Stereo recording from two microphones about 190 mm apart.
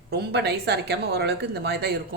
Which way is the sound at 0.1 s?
60° right (ahead or behind).